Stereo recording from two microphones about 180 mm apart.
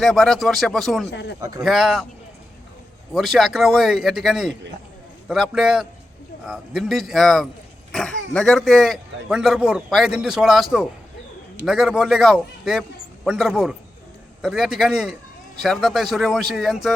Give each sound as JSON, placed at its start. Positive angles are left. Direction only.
{"t": 0.0, "sound": "speech", "side_deg": 0}
{"t": 1.1, "sound": "speech", "side_deg": 70}
{"t": 1.4, "sound": "speech", "side_deg": -20}
{"t": 1.6, "sound": "speech", "side_deg": 0}
{"t": 3.1, "sound": "speech", "side_deg": 0}